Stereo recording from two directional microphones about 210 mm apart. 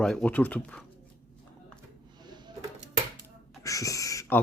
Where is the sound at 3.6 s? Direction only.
15° left (ahead or behind).